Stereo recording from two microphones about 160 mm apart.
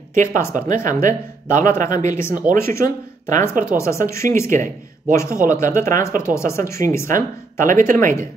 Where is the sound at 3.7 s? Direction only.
15° left (ahead or behind).